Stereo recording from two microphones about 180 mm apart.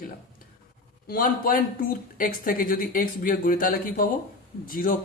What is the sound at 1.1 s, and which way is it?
Speech, 50° left (ahead or behind).